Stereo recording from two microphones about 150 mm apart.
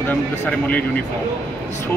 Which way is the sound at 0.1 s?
10° left (ahead or behind).